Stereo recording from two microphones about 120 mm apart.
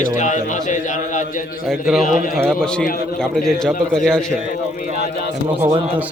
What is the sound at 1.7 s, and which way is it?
A man's voice, centre (ahead or behind).